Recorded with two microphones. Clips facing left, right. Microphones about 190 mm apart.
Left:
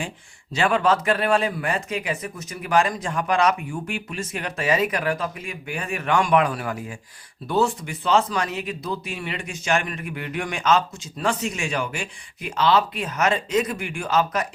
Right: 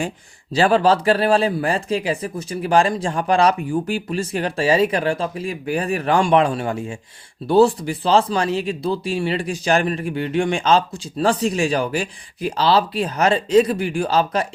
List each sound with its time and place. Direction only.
0.5 s speech: 35° right (ahead or behind)